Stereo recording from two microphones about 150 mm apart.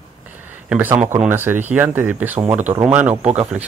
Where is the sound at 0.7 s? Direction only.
10° right (ahead or behind).